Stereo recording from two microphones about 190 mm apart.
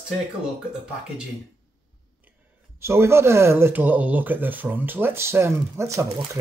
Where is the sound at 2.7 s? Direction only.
15° right (ahead or behind).